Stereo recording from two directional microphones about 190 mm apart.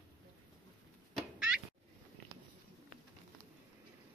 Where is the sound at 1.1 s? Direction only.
Centre (ahead or behind).